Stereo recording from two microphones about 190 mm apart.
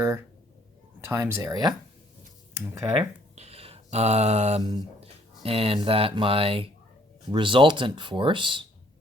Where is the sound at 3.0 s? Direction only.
35° right (ahead or behind).